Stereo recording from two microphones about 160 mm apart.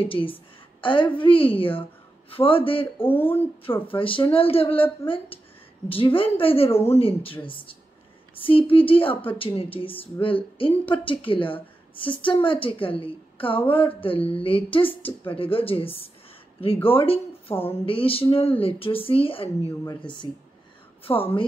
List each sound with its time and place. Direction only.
0.0 s a woman's voice: 35° left (ahead or behind)
3.0 s speech: 15° left (ahead or behind)
3.6 s a woman's voice: 35° left (ahead or behind)
6.7 s speech: 15° left (ahead or behind)
7.0 s a woman's voice: 35° left (ahead or behind)
21.1 s speech: 15° left (ahead or behind)